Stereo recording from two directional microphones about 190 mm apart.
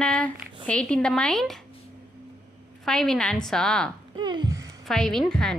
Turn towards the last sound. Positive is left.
turn(degrees=5)  # may be behind; listen again after turning